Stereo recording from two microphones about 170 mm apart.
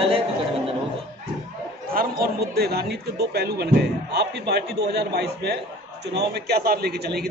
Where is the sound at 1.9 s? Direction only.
60° right (ahead or behind).